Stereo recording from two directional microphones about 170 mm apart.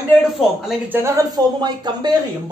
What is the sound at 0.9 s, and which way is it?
Speech, 15° right (ahead or behind).